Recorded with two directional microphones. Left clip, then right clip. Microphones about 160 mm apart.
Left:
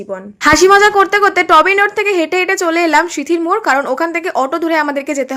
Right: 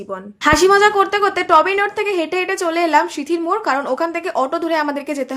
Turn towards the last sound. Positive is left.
turn(degrees=20)  # may be behind; listen again after turning